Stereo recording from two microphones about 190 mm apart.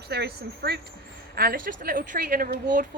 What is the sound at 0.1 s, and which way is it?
A woman's voice, 60° right (ahead or behind).